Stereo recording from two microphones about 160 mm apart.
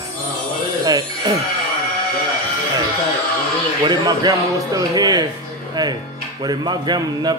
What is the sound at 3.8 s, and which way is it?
A man's voice, 25° right (ahead or behind).